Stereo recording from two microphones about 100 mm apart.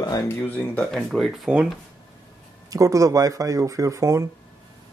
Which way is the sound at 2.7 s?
35° right (ahead or behind).